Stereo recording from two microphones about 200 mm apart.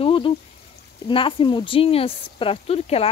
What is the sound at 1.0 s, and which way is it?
Speech, 25° left (ahead or behind).